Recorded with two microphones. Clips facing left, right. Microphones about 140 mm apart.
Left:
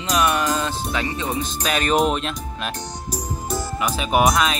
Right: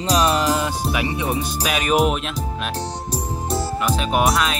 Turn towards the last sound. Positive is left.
turn(degrees=0)  # may be behind; listen again after turning